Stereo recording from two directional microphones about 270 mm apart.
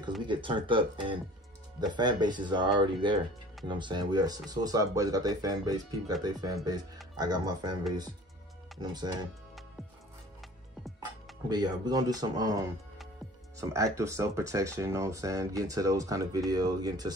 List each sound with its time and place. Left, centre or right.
0.3 s speech: centre
8.8 s speech: centre
11.4 s speech: centre